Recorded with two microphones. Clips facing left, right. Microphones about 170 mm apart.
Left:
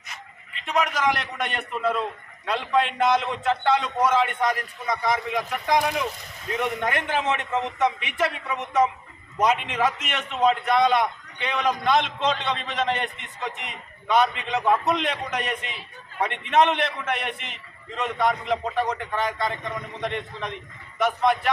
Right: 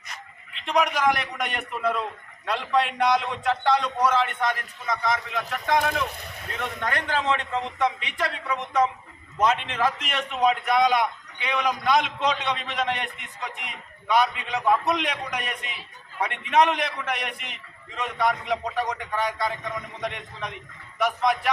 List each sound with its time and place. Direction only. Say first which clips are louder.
0.1 s dog: left 1 dB; centre (ahead or behind)
0.9 s a man's voice: right 1 dB; centre (ahead or behind)
6.6 s a man's voice: left 3 dB; 15° left (ahead or behind)
9.4 s a man's voice: left 1 dB; 5° left (ahead or behind)